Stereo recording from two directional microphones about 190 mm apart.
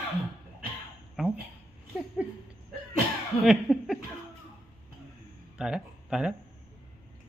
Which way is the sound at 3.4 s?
5° right (ahead or behind).